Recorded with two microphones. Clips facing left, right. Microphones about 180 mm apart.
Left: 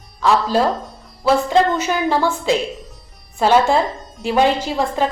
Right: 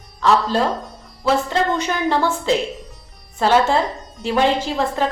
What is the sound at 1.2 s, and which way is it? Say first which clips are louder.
Speech: left 4 dB; 10° left (ahead or behind).